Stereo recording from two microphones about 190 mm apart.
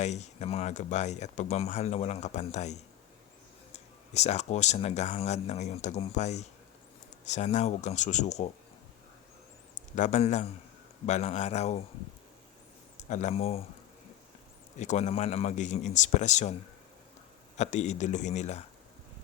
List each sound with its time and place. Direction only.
0.0 s speech: 35° left (ahead or behind)
9.9 s speech: 40° left (ahead or behind)
13.0 s speech: 40° left (ahead or behind)
14.8 s speech: 40° left (ahead or behind)
17.6 s speech: 35° left (ahead or behind)